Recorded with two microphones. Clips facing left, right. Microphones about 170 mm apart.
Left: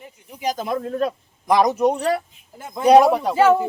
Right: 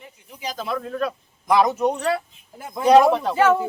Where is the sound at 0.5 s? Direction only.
20° left (ahead or behind).